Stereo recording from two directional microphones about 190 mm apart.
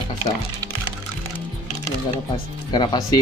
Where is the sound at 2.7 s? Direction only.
20° left (ahead or behind).